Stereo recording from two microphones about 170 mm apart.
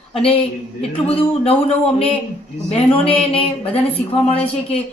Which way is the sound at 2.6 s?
35° left (ahead or behind).